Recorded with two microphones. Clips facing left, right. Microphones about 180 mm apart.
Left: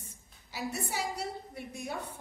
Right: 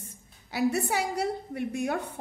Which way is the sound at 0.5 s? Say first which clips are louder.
Right 10 dB; 70° right (ahead or behind).